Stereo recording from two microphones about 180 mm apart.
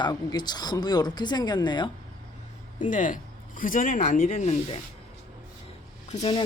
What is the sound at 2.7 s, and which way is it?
Speech, 45° left (ahead or behind).